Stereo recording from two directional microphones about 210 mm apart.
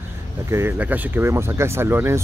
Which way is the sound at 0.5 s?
10° right (ahead or behind).